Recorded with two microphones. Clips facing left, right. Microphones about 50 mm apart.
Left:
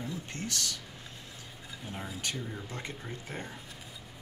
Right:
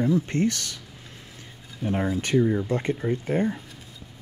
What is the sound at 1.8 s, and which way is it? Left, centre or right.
Speech, right.